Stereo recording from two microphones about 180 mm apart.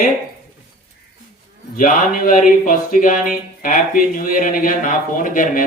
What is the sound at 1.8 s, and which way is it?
Speech, 50° left (ahead or behind).